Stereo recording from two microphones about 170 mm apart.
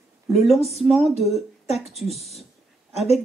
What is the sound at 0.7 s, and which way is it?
Speech, centre (ahead or behind).